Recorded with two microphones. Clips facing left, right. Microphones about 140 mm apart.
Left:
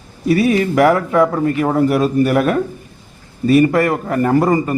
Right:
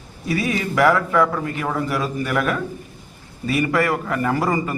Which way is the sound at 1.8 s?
55° left (ahead or behind).